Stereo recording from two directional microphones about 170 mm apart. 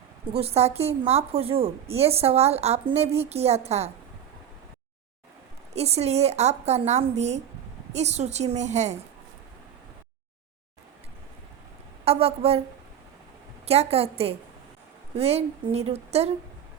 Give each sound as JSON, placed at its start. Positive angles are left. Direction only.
{"t": 0.3, "sound": "a woman's voice", "side_deg": -35}
{"t": 5.7, "sound": "a woman's voice", "side_deg": -40}
{"t": 12.0, "sound": "a woman's voice", "side_deg": -35}
{"t": 13.7, "sound": "a woman's voice", "side_deg": -35}